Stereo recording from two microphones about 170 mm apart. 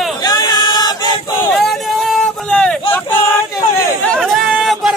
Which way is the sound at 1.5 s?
Centre (ahead or behind).